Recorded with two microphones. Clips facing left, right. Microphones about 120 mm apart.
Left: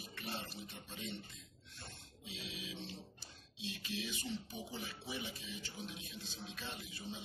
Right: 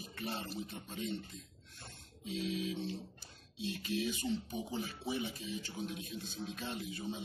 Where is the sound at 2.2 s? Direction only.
45° right (ahead or behind).